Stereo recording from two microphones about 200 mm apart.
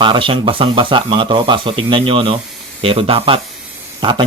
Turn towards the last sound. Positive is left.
turn(degrees=-25)  # may be behind; listen again after turning